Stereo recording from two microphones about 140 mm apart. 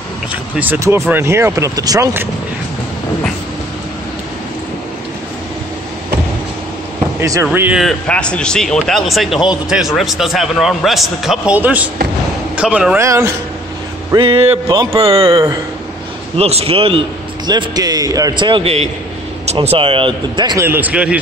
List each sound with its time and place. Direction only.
0.6 s speech: 15° right (ahead or behind)
7.2 s speech: 25° right (ahead or behind)
7.8 s speech: 5° left (ahead or behind); by 13.0 s 10° right (ahead or behind)
13.0 s speech: 20° right (ahead or behind)
14.1 s a man's voice: 45° right (ahead or behind)
15.3 s speech: 25° right (ahead or behind)
16.3 s a man's voice: 45° right (ahead or behind)
17.5 s a man's voice: 30° right (ahead or behind)
20.5 s speech: 15° right (ahead or behind)